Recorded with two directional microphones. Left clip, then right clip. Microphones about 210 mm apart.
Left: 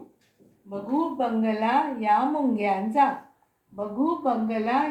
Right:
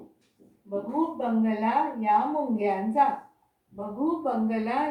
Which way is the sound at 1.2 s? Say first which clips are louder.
Left 2 dB; 40° left (ahead or behind).